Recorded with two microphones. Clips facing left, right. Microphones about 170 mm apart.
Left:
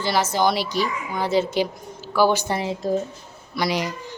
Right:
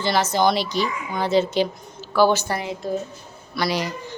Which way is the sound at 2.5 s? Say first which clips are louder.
Left 2 dB; 30° left (ahead or behind).